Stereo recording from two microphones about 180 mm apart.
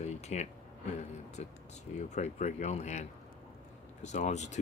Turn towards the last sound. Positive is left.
turn(degrees=40)  # may be behind; listen again after turning